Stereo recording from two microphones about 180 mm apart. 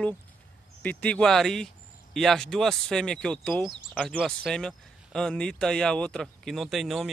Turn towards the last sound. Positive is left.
turn(degrees=0)  # may be behind; listen again after turning